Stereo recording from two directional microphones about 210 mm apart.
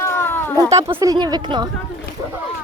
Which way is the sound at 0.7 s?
15° right (ahead or behind).